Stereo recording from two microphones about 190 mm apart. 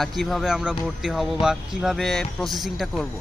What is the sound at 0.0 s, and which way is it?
Speech, centre (ahead or behind).